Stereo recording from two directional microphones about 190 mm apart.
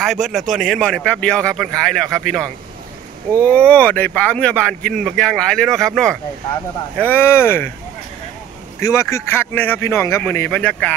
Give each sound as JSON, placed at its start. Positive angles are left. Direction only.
{"t": 0.0, "sound": "speech", "side_deg": 0}
{"t": 8.7, "sound": "speech", "side_deg": 15}